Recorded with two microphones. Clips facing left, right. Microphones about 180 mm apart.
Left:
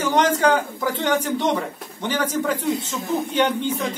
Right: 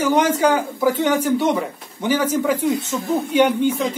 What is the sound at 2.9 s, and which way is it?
Speech, 25° right (ahead or behind).